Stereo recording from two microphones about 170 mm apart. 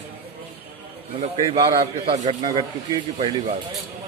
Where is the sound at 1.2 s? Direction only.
35° right (ahead or behind).